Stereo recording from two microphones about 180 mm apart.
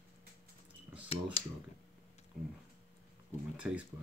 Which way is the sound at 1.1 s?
30° left (ahead or behind).